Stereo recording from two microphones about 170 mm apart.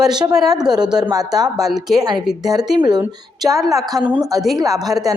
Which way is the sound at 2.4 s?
20° right (ahead or behind).